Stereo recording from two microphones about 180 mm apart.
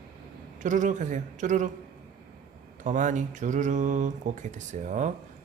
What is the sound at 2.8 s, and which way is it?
Speech, 45° right (ahead or behind).